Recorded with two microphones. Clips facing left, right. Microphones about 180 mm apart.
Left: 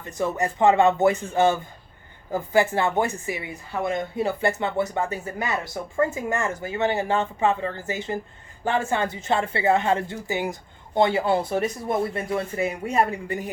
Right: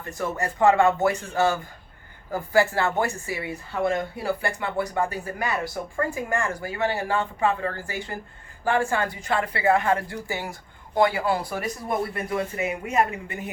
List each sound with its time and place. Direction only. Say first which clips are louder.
0.0 s a woman's voice: left 3 dB; 20° left (ahead or behind); by 13.3 s 35° left (ahead or behind)